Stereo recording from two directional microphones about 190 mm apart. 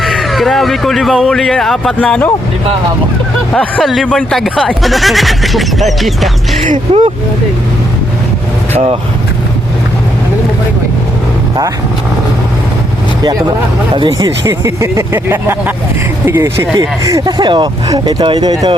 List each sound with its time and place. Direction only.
0.0 s speech: centre (ahead or behind)
3.5 s speech: 5° left (ahead or behind)
6.9 s speech: 30° right (ahead or behind)
13.9 s speech: 20° right (ahead or behind)